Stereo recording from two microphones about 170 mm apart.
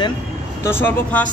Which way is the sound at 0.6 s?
10° left (ahead or behind).